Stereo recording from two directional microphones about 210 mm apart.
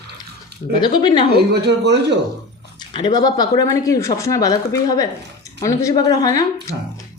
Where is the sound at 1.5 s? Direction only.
50° right (ahead or behind).